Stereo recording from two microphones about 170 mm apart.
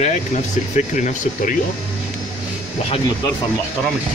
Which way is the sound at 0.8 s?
45° left (ahead or behind).